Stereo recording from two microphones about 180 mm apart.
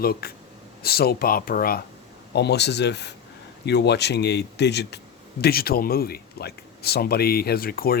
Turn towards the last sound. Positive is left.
turn(degrees=55)  # may be behind; listen again after turning